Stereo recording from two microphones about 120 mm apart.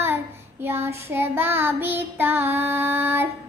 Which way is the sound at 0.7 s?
20° right (ahead or behind).